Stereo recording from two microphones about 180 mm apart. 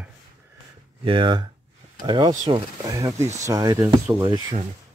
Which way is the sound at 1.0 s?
25° right (ahead or behind).